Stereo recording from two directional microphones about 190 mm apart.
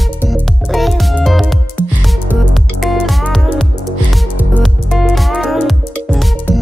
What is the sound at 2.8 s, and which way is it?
Music, centre (ahead or behind).